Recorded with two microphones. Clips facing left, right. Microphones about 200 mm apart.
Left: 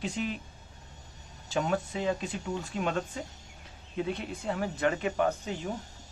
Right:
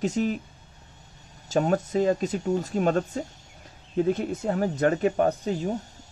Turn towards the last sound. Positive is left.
turn(degrees=-35)  # may be behind; listen again after turning